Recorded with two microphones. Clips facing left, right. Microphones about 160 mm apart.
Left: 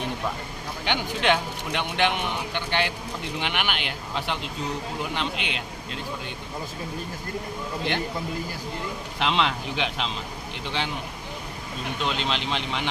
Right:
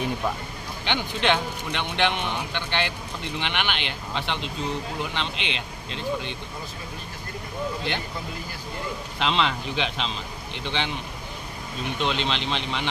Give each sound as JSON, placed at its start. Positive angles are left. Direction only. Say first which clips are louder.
{"t": 0.9, "sound": "a man's voice", "louder": "even", "side_deg": 10}
{"t": 9.1, "sound": "a man's voice", "louder": "even", "side_deg": 5}
{"t": 12.0, "sound": "a man's voice", "louder": "right 1 dB", "side_deg": 5}